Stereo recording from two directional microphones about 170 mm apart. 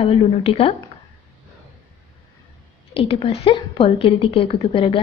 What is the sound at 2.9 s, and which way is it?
A woman's voice, 35° left (ahead or behind).